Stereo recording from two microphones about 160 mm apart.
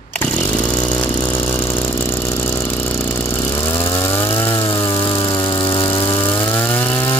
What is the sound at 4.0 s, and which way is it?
Chainsaw, 15° left (ahead or behind).